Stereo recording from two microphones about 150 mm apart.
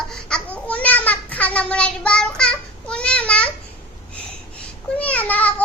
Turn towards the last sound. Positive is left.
turn(degrees=10)  # may be behind; listen again after turning